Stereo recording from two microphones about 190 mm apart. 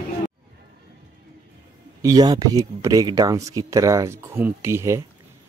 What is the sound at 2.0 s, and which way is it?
Speech, 20° right (ahead or behind).